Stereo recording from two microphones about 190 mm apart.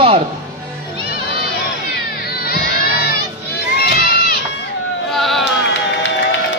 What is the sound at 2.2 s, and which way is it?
Crowd, 55° left (ahead or behind).